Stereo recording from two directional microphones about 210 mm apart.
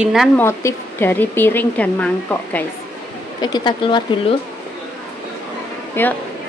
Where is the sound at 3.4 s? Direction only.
20° left (ahead or behind).